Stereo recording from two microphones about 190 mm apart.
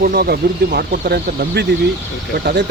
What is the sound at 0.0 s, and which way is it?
Speech, 50° right (ahead or behind).